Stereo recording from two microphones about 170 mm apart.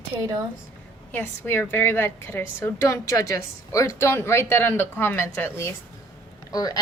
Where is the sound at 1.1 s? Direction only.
10° left (ahead or behind).